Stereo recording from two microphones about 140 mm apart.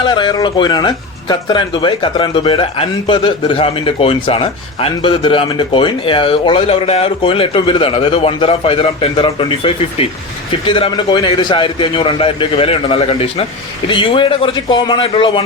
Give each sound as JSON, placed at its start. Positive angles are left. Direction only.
{"t": 0.0, "sound": "speech", "side_deg": 35}